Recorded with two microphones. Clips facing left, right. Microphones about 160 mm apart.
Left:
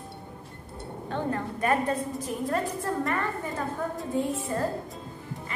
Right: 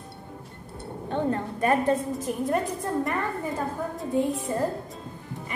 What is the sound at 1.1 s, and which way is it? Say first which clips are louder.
A woman's voice: right 3 dB; 25° right (ahead or behind).